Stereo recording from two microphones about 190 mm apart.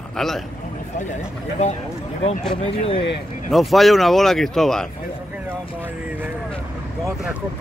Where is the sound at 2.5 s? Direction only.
30° left (ahead or behind).